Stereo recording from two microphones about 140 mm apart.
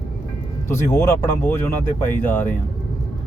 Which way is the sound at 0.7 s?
20° left (ahead or behind).